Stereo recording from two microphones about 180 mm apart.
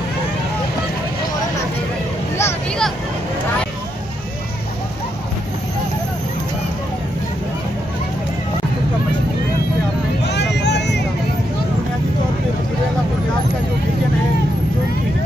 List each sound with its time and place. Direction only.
2.3 s vehicle: 15° left (ahead or behind)
10.2 s vehicle: 70° left (ahead or behind)